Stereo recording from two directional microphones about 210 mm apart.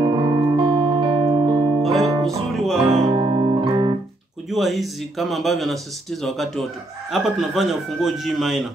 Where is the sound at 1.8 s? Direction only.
Centre (ahead or behind).